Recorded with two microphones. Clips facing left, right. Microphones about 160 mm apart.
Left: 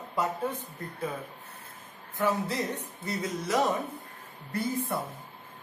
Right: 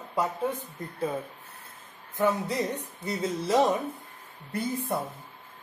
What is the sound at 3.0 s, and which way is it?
Speech, 30° right (ahead or behind).